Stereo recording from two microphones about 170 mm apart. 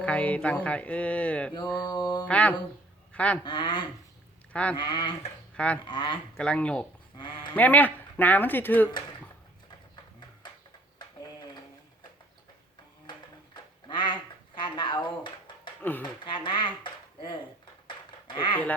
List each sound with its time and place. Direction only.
0.0 s speech: 10° left (ahead or behind)
1.8 s speech: 25° left (ahead or behind)
2.2 s speech: 10° left (ahead or behind)
3.1 s goose: 5° left (ahead or behind)
3.4 s speech: 25° left (ahead or behind)
5.5 s speech: 5° left (ahead or behind)
5.8 s speech: 25° left (ahead or behind)
6.3 s speech: 5° left (ahead or behind)
9.6 s a sound: 25° left (ahead or behind)
13.1 s a sound: 25° left (ahead or behind)
15.8 s speech: 10° left (ahead or behind)
16.2 s speech: 25° left (ahead or behind)
17.8 s a sound: 25° left (ahead or behind)